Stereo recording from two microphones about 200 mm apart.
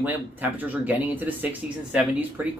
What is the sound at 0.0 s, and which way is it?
Speech, 10° right (ahead or behind).